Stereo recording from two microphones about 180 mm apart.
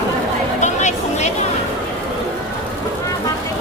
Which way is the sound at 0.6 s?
40° left (ahead or behind).